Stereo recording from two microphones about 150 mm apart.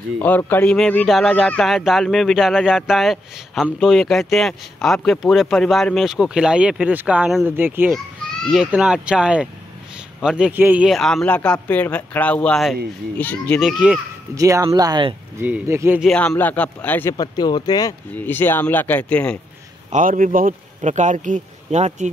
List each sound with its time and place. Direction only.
0.2 s speech: 10° left (ahead or behind); by 7.9 s 15° right (ahead or behind)
7.9 s children playing: centre (ahead or behind)
8.7 s speech: 5° right (ahead or behind); by 13.6 s 10° left (ahead or behind)
13.6 s speech: 5° right (ahead or behind)
14.3 s speech: 20° right (ahead or behind)
15.3 s speech: 15° right (ahead or behind)
16.0 s speech: 5° left (ahead or behind)
17.2 s speech: 25° left (ahead or behind)
18.1 s speech: 15° left (ahead or behind)
19.9 s a man's voice: 65° right (ahead or behind)